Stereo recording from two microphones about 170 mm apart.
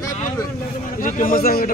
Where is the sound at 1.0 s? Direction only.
50° left (ahead or behind).